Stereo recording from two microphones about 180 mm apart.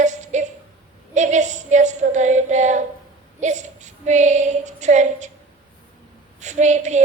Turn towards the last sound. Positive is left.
turn(degrees=-40)  # may be behind; listen again after turning